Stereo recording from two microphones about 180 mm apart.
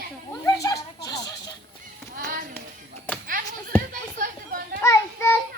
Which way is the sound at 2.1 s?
50° right (ahead or behind).